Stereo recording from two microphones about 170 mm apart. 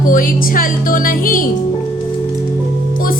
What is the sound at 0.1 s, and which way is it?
Speech, 55° left (ahead or behind).